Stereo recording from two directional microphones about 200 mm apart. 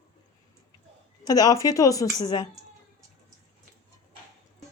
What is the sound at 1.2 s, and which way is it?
Speech, 20° left (ahead or behind).